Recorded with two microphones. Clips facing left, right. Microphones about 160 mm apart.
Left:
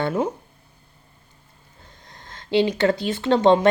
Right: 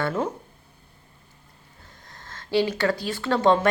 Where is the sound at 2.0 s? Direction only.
20° left (ahead or behind).